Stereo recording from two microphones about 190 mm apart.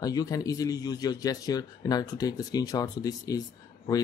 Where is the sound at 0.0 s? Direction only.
20° left (ahead or behind).